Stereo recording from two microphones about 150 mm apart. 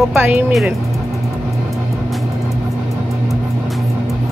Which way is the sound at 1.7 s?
Centre (ahead or behind).